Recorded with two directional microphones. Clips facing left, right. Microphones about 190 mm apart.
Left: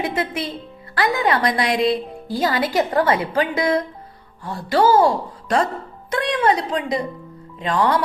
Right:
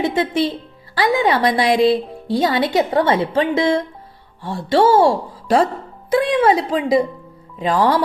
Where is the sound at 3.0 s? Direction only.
30° right (ahead or behind).